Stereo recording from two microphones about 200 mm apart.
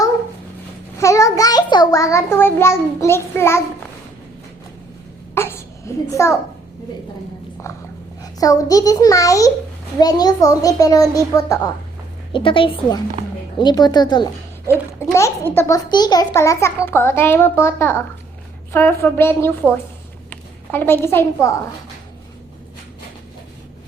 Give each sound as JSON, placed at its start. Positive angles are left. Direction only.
{"t": 0.9, "sound": "a sound", "side_deg": 15}
{"t": 5.3, "sound": "babbling", "side_deg": 10}
{"t": 8.2, "sound": "a child's voice", "side_deg": 15}